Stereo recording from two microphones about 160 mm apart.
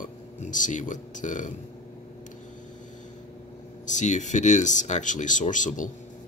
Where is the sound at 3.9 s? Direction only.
50° left (ahead or behind).